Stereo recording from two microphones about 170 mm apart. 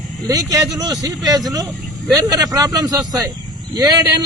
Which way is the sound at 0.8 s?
20° right (ahead or behind).